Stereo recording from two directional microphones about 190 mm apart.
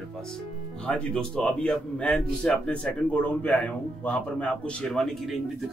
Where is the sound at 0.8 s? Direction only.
5° left (ahead or behind).